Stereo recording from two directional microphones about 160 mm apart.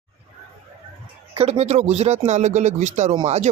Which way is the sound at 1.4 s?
40° right (ahead or behind).